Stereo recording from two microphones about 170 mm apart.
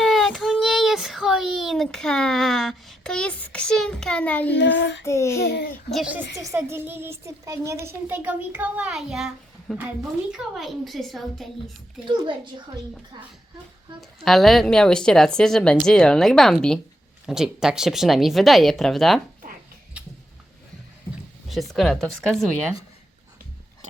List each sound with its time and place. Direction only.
0.0 s child singing: centre (ahead or behind)
4.5 s child singing: 90° left
5.0 s child singing: 15° left (ahead or behind)
5.4 s a child's voice: 80° left
5.9 s speech: 5° right (ahead or behind)
6.4 s speech: 15° right (ahead or behind); by 11.4 s centre (ahead or behind)
12.0 s a woman's voice: 30° right (ahead or behind)
14.3 s speech: centre (ahead or behind)
21.5 s speech: centre (ahead or behind)